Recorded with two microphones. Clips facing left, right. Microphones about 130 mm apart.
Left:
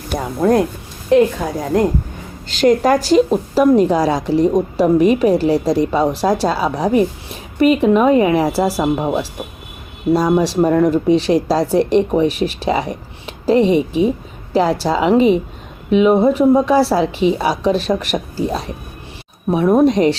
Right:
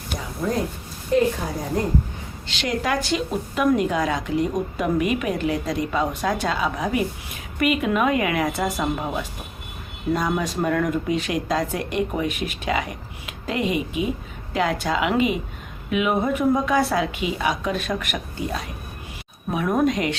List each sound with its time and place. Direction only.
0.1 s a sound: 65° left (ahead or behind)
1.1 s a woman's voice: 75° left (ahead or behind)
1.7 s speech: 90° left
2.5 s a woman's voice: 45° left (ahead or behind)